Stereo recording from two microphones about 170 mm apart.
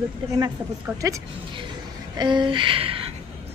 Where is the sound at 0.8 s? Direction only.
20° right (ahead or behind).